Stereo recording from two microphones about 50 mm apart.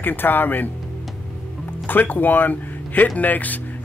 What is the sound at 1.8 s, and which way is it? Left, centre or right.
Speech, left.